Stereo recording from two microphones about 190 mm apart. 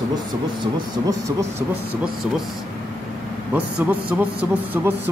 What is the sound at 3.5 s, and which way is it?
Speech, 10° right (ahead or behind).